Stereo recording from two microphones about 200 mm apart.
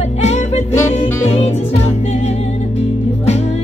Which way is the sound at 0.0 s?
35° left (ahead or behind).